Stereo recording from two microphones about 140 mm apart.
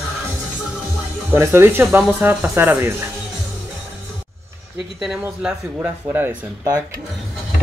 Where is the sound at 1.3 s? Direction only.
15° right (ahead or behind).